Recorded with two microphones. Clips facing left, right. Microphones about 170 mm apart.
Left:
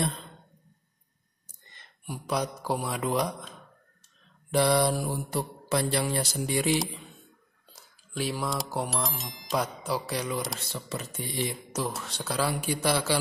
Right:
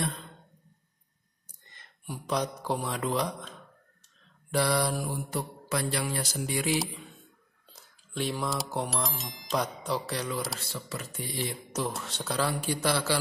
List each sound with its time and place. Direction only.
2.0 s a man's voice: 10° left (ahead or behind)
4.5 s mantra: 20° left (ahead or behind)
7.7 s speech: 5° left (ahead or behind)
10.7 s mantra: 20° left (ahead or behind)
11.7 s a man's voice: centre (ahead or behind)